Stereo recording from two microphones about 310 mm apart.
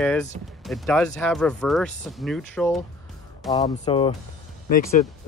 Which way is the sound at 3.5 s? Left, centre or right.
Centre.